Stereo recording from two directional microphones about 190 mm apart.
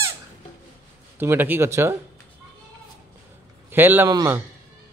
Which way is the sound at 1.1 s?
10° right (ahead or behind).